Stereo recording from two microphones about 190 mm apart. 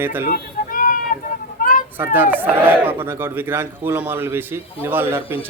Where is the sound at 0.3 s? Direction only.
50° left (ahead or behind).